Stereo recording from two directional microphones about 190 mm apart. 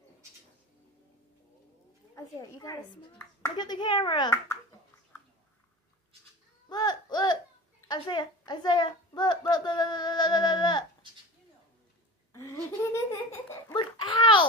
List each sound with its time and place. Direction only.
2.1 s a woman's voice: 15° left (ahead or behind)
6.7 s baby cry: 20° left (ahead or behind)
7.9 s a woman's voice: 20° left (ahead or behind)
12.3 s laughter: 15° left (ahead or behind)
13.7 s a sound: 25° left (ahead or behind)